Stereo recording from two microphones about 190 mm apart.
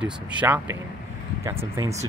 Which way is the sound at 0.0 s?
5° right (ahead or behind).